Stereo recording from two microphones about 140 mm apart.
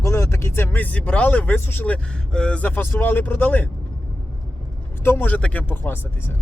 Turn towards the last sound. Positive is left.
turn(degrees=15)  # may be behind; listen again after turning